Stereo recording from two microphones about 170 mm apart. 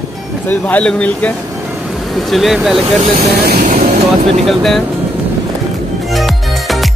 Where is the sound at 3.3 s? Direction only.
60° right (ahead or behind).